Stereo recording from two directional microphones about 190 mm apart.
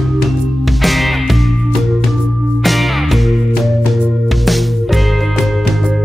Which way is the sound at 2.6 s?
Centre (ahead or behind).